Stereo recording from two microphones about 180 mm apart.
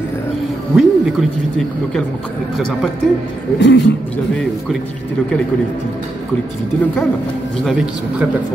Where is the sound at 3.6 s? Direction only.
80° left.